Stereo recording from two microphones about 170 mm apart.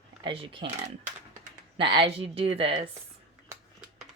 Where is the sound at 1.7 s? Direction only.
30° right (ahead or behind).